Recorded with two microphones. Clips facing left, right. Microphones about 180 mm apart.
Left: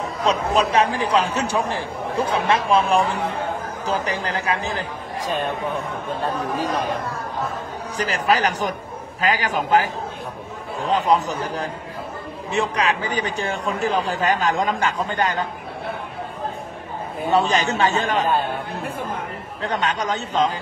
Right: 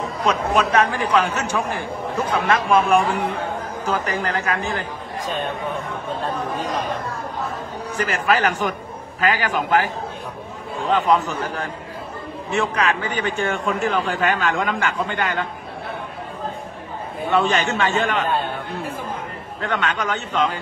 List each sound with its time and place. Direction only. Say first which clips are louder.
0.2 s a man's voice: even; 35° left (ahead or behind)
4.5 s a man's voice: even; 35° left (ahead or behind)
8.1 s a man's voice: even; 35° left (ahead or behind)
10.9 s a man's voice: right 1 dB; 40° left (ahead or behind)
12.4 s a man's voice: even; 35° left (ahead or behind)
17.3 s a man's voice: even; 35° left (ahead or behind)
19.6 s a man's voice: even; 35° left (ahead or behind)